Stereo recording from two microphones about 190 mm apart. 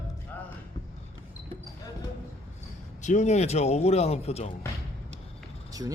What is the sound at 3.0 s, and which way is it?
Speech, 40° left (ahead or behind).